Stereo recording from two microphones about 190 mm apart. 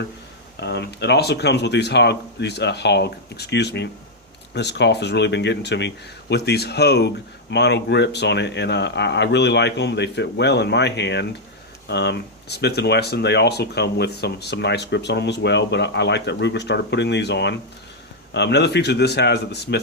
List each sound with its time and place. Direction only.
0.6 s speech: 60° left (ahead or behind)